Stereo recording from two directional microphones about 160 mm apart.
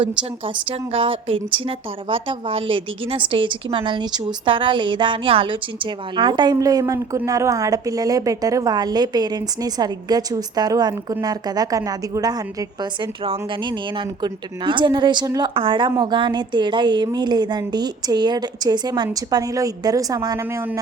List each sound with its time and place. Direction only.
0.0 s a woman's voice: 30° right (ahead or behind)